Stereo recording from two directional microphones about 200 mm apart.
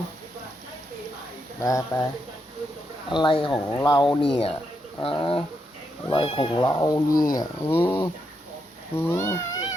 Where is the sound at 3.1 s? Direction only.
25° left (ahead or behind).